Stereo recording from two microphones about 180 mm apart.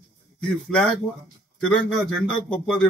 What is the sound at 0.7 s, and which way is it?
Speech, 5° left (ahead or behind).